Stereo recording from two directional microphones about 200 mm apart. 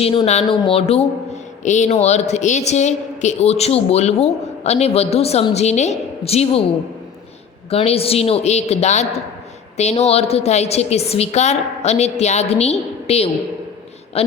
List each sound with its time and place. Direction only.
0.0 s a woman's voice: 25° left (ahead or behind)
7.7 s a woman's voice: 30° left (ahead or behind)